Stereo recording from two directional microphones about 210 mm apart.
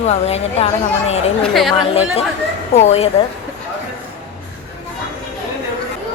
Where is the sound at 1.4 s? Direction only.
Centre (ahead or behind).